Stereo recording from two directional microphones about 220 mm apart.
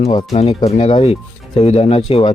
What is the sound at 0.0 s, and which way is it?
Speech, 20° left (ahead or behind).